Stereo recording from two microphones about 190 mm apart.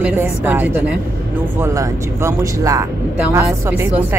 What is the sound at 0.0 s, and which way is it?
Speech, 10° right (ahead or behind).